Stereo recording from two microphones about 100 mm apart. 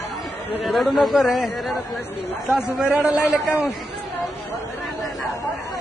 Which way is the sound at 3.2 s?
20° left (ahead or behind).